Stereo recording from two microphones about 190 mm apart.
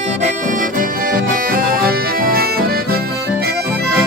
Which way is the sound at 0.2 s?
45° right (ahead or behind).